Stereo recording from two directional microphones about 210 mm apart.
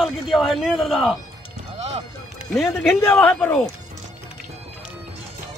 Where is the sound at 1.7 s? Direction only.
30° right (ahead or behind).